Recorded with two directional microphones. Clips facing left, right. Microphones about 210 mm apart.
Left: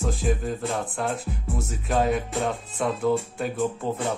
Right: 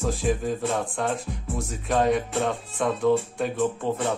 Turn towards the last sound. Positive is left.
turn(degrees=5)  # may be behind; listen again after turning